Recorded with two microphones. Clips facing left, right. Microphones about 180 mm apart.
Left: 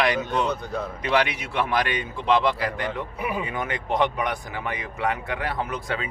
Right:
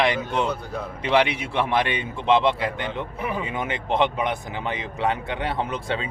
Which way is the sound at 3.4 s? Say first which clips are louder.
Right 1 dB; 25° right (ahead or behind).